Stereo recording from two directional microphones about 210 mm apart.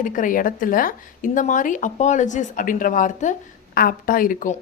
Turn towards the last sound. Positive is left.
turn(degrees=40)  # may be behind; listen again after turning